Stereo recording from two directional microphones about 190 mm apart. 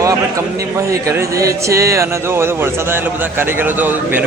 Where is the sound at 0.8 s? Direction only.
15° right (ahead or behind).